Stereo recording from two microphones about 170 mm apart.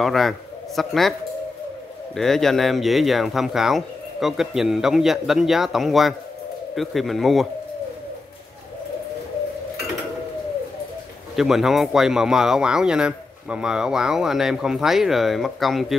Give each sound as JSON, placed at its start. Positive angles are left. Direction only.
{"t": 0.0, "sound": "a man's voice", "side_deg": 0}
{"t": 2.1, "sound": "a man's voice", "side_deg": 0}
{"t": 11.3, "sound": "a man's voice", "side_deg": 0}